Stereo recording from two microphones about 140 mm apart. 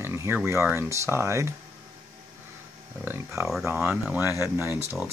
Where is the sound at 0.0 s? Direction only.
20° right (ahead or behind).